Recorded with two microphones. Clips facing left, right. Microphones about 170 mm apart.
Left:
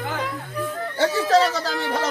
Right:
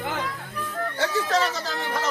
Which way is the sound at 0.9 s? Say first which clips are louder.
Left 6 dB; 30° left (ahead or behind).